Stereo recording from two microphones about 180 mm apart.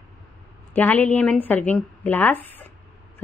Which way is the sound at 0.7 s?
10° left (ahead or behind).